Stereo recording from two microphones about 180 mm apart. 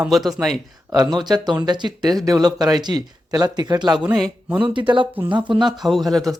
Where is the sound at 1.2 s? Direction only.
25° right (ahead or behind).